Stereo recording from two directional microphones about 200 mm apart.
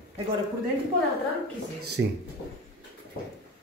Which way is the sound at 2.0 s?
60° right (ahead or behind).